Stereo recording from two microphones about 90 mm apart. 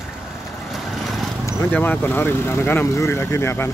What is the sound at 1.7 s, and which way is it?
Speech, 20° left (ahead or behind).